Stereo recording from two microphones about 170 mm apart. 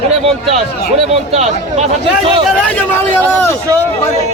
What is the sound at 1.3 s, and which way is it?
Speech, 40° right (ahead or behind).